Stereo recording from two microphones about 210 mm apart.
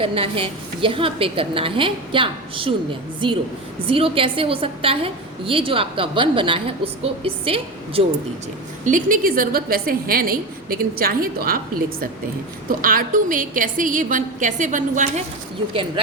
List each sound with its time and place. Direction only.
0.0 s a woman's voice: 25° right (ahead or behind)
8.8 s a woman's voice: 40° right (ahead or behind)